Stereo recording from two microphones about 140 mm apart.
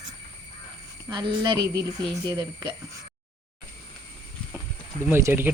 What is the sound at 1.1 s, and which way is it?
Speech, 35° right (ahead or behind).